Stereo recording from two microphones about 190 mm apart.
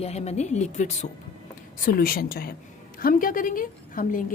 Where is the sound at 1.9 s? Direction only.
50° left (ahead or behind).